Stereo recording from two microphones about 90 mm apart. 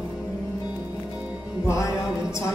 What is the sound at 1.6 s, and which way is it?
Music, 35° left (ahead or behind).